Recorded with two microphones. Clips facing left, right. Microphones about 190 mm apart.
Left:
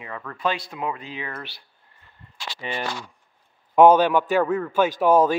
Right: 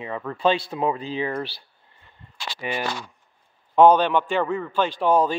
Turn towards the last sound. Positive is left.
turn(degrees=5)  # may be behind; listen again after turning